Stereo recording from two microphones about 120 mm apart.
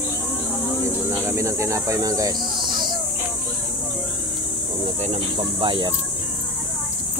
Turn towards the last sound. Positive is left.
turn(degrees=-45)  # may be behind; listen again after turning